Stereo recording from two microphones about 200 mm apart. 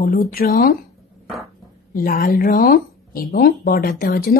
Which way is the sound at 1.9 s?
45° left (ahead or behind).